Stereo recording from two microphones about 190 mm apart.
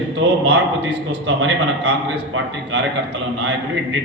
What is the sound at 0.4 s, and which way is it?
A man's voice, 60° right (ahead or behind).